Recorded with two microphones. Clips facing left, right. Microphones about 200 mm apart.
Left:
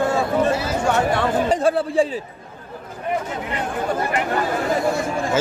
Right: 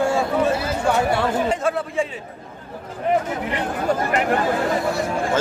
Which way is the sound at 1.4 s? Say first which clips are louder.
Left 3 dB; 35° left (ahead or behind).